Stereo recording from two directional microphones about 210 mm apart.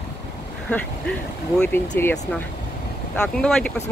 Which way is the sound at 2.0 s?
10° left (ahead or behind).